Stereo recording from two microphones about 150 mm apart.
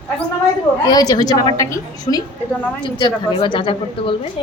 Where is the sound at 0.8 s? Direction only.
25° left (ahead or behind).